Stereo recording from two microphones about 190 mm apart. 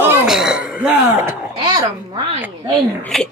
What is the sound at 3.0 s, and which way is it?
Speech, centre (ahead or behind).